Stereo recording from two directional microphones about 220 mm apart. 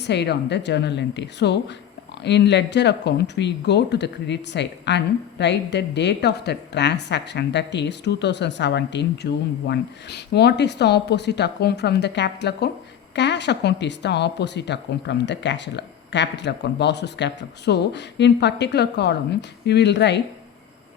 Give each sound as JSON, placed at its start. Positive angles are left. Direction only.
{"t": 0.0, "sound": "speech", "side_deg": 50}